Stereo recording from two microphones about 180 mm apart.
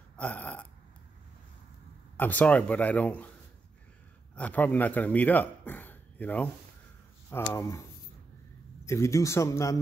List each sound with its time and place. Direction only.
0.2 s burping: 10° left (ahead or behind)
2.1 s speech: 10° left (ahead or behind)
4.4 s speech: 10° left (ahead or behind)
8.8 s speech: 15° left (ahead or behind)